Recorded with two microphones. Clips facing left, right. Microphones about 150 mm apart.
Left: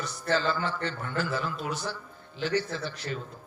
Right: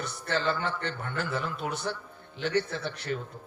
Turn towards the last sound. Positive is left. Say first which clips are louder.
# right 1 dB
turn(degrees=-60)  # may be behind; listen again after turning